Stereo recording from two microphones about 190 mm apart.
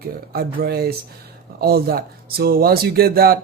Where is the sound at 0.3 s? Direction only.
55° right (ahead or behind).